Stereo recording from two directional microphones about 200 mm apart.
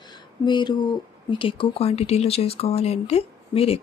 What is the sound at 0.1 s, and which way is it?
Speech, 20° left (ahead or behind).